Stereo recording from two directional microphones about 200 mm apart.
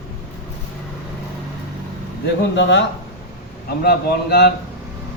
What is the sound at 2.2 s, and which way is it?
Speech, 60° left (ahead or behind).